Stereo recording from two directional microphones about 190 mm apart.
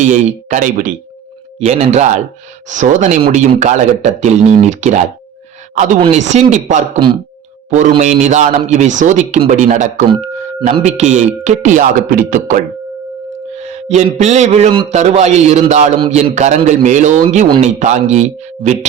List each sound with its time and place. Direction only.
0.0 s a man's voice: 40° right (ahead or behind)
13.6 s a man's voice: 35° right (ahead or behind)